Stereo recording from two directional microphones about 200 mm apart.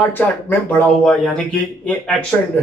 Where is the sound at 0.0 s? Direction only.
10° left (ahead or behind).